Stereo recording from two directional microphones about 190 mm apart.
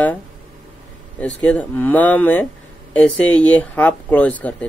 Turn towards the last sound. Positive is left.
turn(degrees=5)  # may be behind; listen again after turning